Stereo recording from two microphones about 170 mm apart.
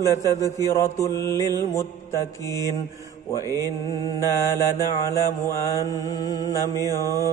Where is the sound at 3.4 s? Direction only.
20° right (ahead or behind).